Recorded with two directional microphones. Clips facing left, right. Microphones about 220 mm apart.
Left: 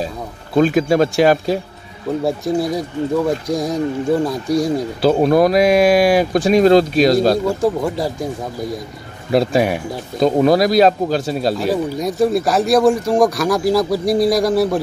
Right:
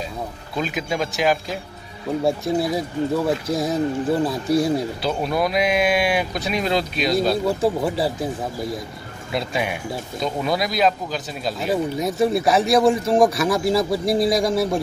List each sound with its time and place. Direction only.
0.6 s speech: 45° left (ahead or behind)
2.2 s speech: centre (ahead or behind)
5.0 s speech: 50° left (ahead or behind)
7.4 s speech: centre (ahead or behind)
9.3 s speech: 45° left (ahead or behind)
11.5 s speech: centre (ahead or behind)